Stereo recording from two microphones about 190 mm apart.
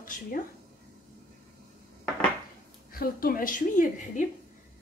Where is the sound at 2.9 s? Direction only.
50° left (ahead or behind).